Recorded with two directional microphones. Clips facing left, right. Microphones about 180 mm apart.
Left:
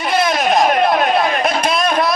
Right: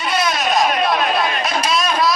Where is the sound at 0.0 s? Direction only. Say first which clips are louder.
Left 4 dB; 55° left (ahead or behind).